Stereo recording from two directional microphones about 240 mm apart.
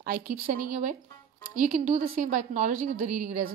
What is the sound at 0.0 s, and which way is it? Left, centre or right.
A woman's voice, right.